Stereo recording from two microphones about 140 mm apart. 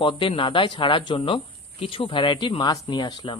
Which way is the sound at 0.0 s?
35° left (ahead or behind).